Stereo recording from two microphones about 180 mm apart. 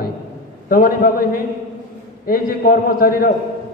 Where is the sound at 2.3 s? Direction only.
55° left (ahead or behind).